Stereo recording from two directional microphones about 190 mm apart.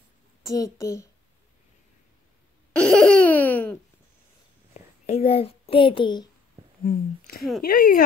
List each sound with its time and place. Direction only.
0.5 s a child's voice: 15° left (ahead or behind)
2.7 s laughter: 5° left (ahead or behind)
5.0 s a child's voice: 35° left (ahead or behind)
6.8 s speech: 50° left (ahead or behind)